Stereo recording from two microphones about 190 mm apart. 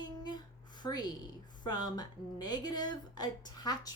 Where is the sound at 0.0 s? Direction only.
20° left (ahead or behind).